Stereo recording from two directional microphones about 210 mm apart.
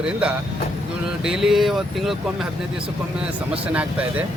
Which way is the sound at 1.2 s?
Centre (ahead or behind).